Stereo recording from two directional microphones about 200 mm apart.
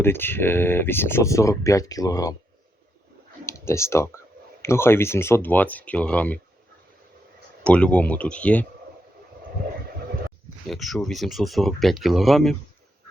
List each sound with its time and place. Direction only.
0.0 s speech: 10° left (ahead or behind)
3.4 s speech: 15° left (ahead or behind)
7.6 s speech: 5° left (ahead or behind)
10.7 s speech: centre (ahead or behind)